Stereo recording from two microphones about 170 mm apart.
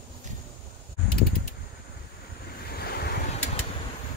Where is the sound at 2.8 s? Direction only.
65° left (ahead or behind).